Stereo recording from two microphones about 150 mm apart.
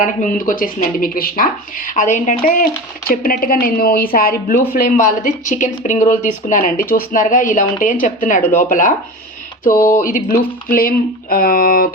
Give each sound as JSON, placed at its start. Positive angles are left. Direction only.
{"t": 0.0, "sound": "speech", "side_deg": 65}
{"t": 3.1, "sound": "a woman's voice", "side_deg": 70}